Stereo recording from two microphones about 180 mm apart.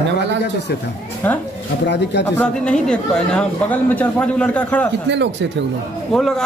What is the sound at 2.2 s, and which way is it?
Speech, 5° left (ahead or behind).